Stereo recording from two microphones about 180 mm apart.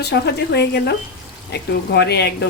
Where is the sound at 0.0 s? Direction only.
65° left (ahead or behind).